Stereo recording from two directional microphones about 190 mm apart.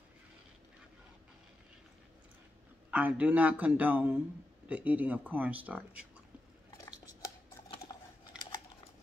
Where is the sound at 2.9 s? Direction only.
10° right (ahead or behind).